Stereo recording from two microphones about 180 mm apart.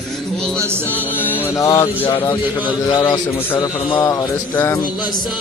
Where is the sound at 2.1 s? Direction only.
20° left (ahead or behind).